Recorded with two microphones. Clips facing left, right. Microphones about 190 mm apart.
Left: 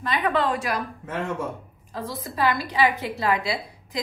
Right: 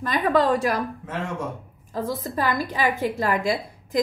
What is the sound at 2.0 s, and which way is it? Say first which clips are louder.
A woman's voice: left 1 dB; 45° right (ahead or behind).